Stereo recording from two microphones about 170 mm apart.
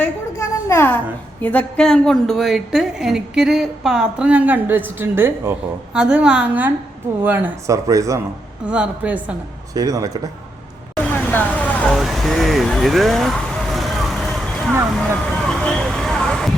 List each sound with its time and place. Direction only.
0.0 s a sound: 15° left (ahead or behind)
1.4 s a woman's voice: 10° left (ahead or behind); by 8.2 s 20° right (ahead or behind)
8.6 s a woman's voice: 5° right (ahead or behind)
9.7 s speech: 20° right (ahead or behind)
10.9 s vehicle: 10° left (ahead or behind)